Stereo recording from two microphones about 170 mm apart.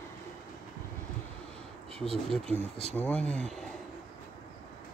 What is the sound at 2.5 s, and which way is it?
Speech, 40° right (ahead or behind).